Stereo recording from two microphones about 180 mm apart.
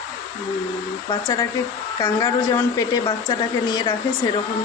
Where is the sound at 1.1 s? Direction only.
20° left (ahead or behind).